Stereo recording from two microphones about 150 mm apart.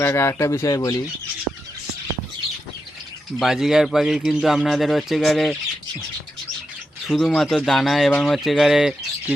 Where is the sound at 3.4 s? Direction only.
Centre (ahead or behind).